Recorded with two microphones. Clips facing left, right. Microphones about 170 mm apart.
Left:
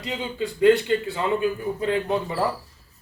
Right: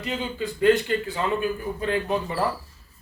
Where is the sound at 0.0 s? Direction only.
20° left (ahead or behind).